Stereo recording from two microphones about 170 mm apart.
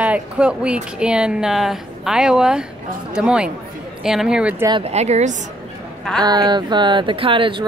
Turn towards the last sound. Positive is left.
turn(degrees=-30)  # may be behind; listen again after turning